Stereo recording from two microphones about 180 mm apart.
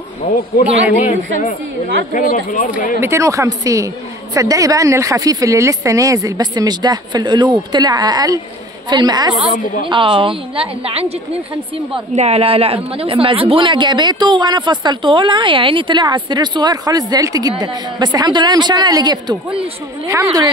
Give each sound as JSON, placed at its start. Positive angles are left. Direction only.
{"t": 0.2, "sound": "speech", "side_deg": 35}
{"t": 2.1, "sound": "speech", "side_deg": 50}
{"t": 3.0, "sound": "a woman's voice", "side_deg": -15}